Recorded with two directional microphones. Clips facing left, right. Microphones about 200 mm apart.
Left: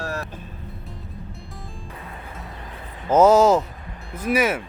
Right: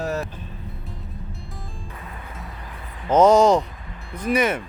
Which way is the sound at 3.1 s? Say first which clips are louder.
Even; 5° left (ahead or behind).